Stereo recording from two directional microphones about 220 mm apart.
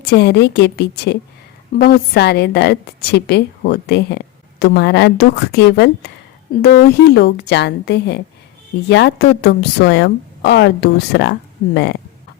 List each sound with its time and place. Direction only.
0.0 s a woman's voice: 50° left (ahead or behind)